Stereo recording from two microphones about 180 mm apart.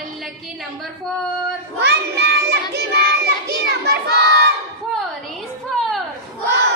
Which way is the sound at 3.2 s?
65° right (ahead or behind).